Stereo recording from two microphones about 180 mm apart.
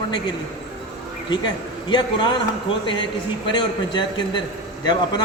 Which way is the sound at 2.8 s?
25° left (ahead or behind).